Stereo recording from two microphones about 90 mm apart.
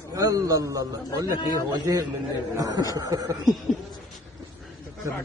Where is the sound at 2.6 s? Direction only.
45° right (ahead or behind).